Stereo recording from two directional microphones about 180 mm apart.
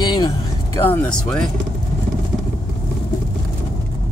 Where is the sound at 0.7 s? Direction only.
10° left (ahead or behind).